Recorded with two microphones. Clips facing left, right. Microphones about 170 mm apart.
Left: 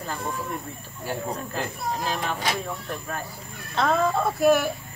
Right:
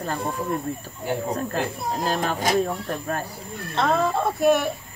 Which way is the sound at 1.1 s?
20° right (ahead or behind).